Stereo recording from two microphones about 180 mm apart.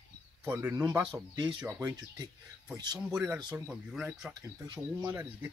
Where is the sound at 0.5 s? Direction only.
15° right (ahead or behind).